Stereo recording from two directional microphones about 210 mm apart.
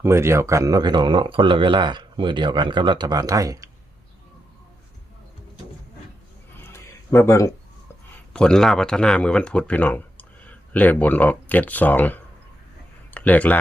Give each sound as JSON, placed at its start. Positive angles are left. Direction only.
{"t": 0.0, "sound": "speech", "side_deg": -10}
{"t": 6.6, "sound": "a sound", "side_deg": 10}
{"t": 8.3, "sound": "speech", "side_deg": 5}